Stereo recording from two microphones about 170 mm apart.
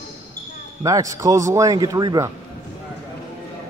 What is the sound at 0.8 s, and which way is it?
A man's voice, 20° right (ahead or behind).